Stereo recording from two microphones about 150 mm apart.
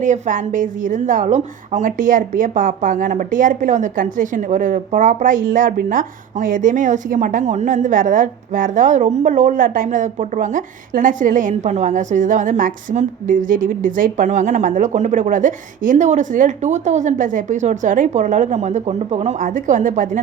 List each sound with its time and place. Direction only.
0.0 s a woman's voice: 55° right (ahead or behind)